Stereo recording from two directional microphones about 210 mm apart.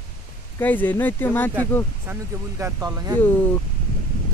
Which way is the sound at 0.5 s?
10° left (ahead or behind).